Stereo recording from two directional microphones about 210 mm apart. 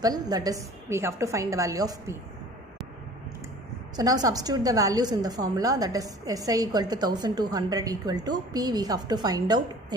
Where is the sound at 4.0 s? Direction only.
15° right (ahead or behind).